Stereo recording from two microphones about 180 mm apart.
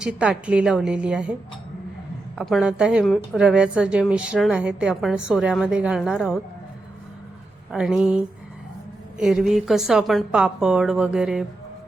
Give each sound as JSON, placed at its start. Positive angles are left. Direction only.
{"t": 0.0, "sound": "a woman's voice", "side_deg": -5}
{"t": 7.7, "sound": "a woman's voice", "side_deg": 0}